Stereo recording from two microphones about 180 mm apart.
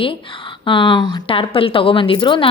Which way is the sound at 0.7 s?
30° left (ahead or behind).